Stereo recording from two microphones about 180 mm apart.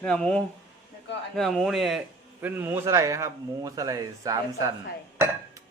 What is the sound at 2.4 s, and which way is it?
Speech, 10° right (ahead or behind).